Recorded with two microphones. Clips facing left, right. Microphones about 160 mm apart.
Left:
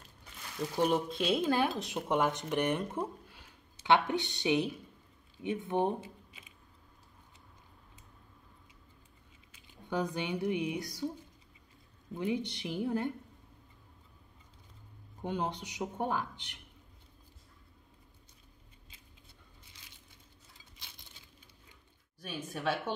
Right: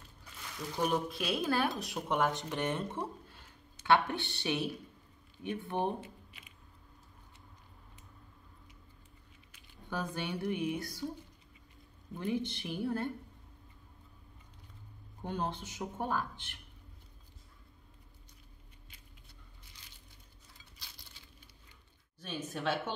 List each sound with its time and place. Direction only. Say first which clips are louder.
0.8 s speech: left 2 dB; 25° left (ahead or behind)
9.5 s speech: left 4 dB; 20° left (ahead or behind)
12.1 s speech: left 1 dB; 15° left (ahead or behind)
15.2 s speech: left 2 dB; 15° left (ahead or behind)
22.2 s speech: left 1 dB; 10° left (ahead or behind)